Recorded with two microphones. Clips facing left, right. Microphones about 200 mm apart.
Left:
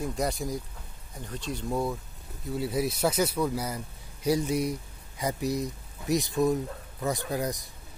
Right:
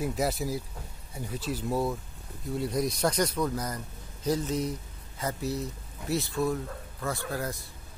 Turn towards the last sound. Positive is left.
turn(degrees=15)  # may be behind; listen again after turning